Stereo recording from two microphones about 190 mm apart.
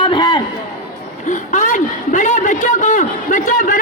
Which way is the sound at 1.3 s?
40° left (ahead or behind).